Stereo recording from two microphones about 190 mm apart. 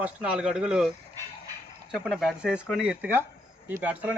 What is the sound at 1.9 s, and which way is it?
Speech, 5° right (ahead or behind).